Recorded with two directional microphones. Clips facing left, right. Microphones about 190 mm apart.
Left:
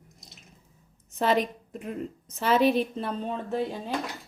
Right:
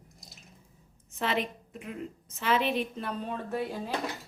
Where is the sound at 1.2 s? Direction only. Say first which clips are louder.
Left 6 dB; 40° left (ahead or behind).